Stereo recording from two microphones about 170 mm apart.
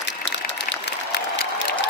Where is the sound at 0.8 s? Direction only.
85° left.